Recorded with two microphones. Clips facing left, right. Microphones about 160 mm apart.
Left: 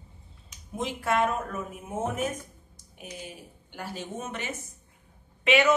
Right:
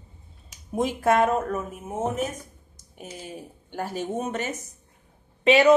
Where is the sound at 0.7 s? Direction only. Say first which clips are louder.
Right 6 dB; 45° right (ahead or behind).